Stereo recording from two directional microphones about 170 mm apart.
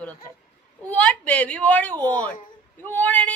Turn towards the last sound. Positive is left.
turn(degrees=10)  # may be behind; listen again after turning